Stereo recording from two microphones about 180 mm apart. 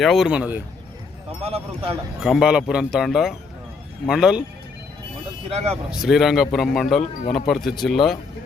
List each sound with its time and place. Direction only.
0.0 s speech: centre (ahead or behind)
1.4 s speech: 35° right (ahead or behind)
2.2 s speech: 5° right (ahead or behind)
5.5 s speech: 35° right (ahead or behind)
5.9 s speech: centre (ahead or behind)